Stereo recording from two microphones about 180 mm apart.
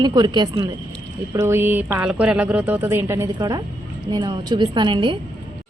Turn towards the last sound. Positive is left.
turn(degrees=-25)  # may be behind; listen again after turning